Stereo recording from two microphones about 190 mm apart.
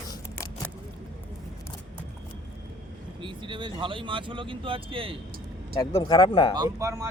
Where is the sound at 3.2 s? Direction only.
25° right (ahead or behind).